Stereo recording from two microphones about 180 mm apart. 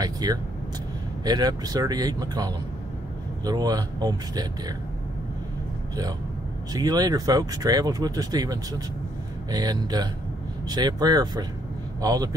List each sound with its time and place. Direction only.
0.0 s vehicle: 20° right (ahead or behind)
1.2 s speech: 20° right (ahead or behind)
6.7 s speech: 20° right (ahead or behind)